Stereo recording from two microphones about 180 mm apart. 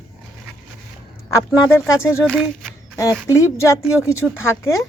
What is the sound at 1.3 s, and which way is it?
Speech, 15° left (ahead or behind).